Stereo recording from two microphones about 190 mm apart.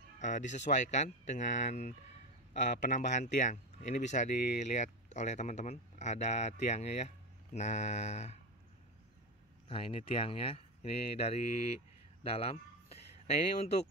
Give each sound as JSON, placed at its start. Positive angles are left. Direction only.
{"t": 0.2, "sound": "speech", "side_deg": 40}
{"t": 9.7, "sound": "speech", "side_deg": 30}
{"t": 12.2, "sound": "a sound", "side_deg": 30}